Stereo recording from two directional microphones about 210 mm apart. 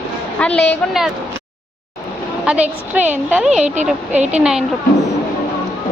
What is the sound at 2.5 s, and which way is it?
A woman's voice, 5° right (ahead or behind).